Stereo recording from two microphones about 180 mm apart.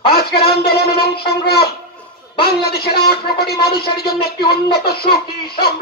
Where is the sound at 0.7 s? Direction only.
60° left (ahead or behind).